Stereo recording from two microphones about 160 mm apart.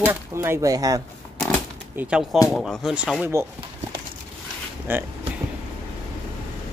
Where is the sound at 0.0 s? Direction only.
15° right (ahead or behind).